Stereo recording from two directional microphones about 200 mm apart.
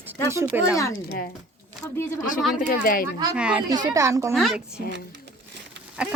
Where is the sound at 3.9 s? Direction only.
15° right (ahead or behind).